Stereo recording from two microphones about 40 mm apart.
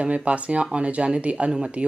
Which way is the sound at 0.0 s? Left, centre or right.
Right.